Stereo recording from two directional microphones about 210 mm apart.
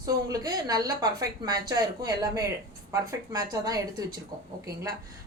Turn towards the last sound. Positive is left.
turn(degrees=-15)  # may be behind; listen again after turning